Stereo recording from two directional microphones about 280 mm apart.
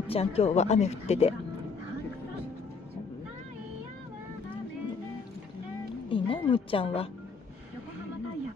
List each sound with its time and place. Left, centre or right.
0.1 s speech: left
6.0 s speech: centre